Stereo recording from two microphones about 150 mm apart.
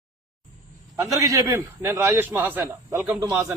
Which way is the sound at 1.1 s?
20° right (ahead or behind).